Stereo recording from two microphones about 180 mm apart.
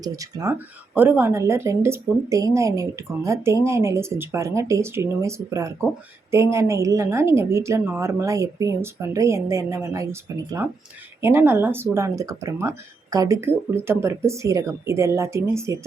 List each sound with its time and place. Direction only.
0.0 s a woman's voice: 20° right (ahead or behind)